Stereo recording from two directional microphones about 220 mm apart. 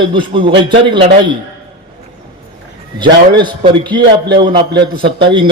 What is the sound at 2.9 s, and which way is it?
A man's voice, 20° right (ahead or behind).